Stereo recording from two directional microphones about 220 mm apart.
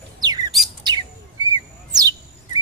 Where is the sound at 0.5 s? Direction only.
Centre (ahead or behind).